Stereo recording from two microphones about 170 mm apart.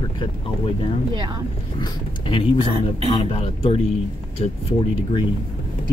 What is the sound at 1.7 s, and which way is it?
Speech, 30° left (ahead or behind).